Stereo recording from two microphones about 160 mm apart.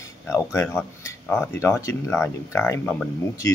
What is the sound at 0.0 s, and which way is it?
Speech, 15° left (ahead or behind).